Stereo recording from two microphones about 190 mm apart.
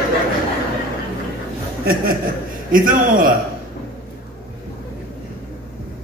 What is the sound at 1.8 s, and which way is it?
A man's voice, 50° right (ahead or behind).